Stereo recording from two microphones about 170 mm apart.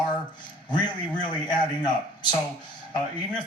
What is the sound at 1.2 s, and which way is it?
Speech, 25° left (ahead or behind).